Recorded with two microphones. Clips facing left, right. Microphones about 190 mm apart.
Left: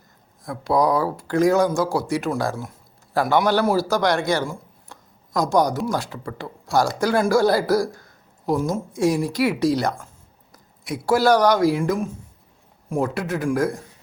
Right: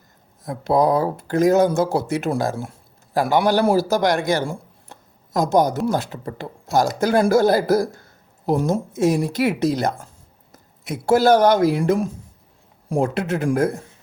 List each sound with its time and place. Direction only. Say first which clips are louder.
0.4 s speech: right 2 dB; 25° right (ahead or behind)
4.4 s a sound: right 3 dB; 25° right (ahead or behind)
5.9 s speech: right 3 dB; 20° right (ahead or behind)
11.8 s speech: right 3 dB; 35° right (ahead or behind)